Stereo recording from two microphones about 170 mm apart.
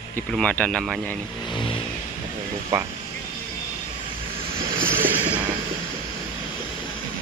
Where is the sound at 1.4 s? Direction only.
30° left (ahead or behind).